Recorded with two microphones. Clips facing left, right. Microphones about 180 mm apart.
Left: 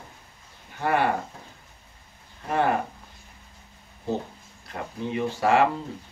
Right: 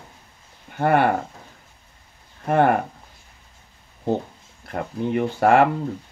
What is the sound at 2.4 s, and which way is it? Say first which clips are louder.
Speech: right 6 dB; 55° right (ahead or behind).